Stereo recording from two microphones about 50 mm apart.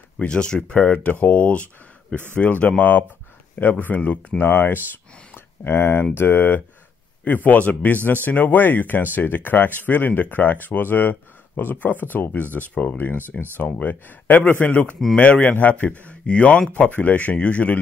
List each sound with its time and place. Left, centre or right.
0.2 s speech: centre
0.7 s speech: left
12.9 s speech: left
13.6 s speech: left